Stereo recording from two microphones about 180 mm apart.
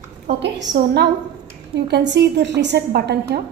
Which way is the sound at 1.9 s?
70° right (ahead or behind).